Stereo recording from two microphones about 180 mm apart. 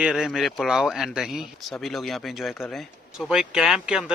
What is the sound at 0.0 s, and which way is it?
Speech, 5° right (ahead or behind).